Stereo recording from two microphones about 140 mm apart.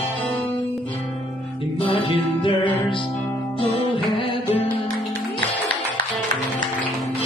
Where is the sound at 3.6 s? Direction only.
40° left (ahead or behind).